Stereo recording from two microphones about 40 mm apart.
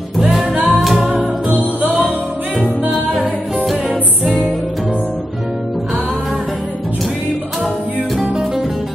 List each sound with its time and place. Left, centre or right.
0.2 s music: centre
1.5 s music: right